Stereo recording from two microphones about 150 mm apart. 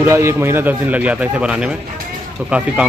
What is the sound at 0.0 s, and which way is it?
A man's voice, 15° right (ahead or behind).